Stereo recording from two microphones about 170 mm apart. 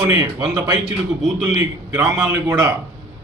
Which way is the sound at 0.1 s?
20° right (ahead or behind).